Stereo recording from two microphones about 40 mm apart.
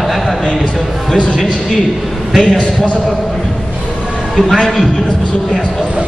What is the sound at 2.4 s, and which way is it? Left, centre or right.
Speech, left.